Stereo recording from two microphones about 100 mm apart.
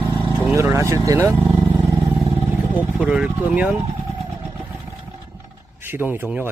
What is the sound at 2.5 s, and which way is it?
Vehicle, 20° right (ahead or behind).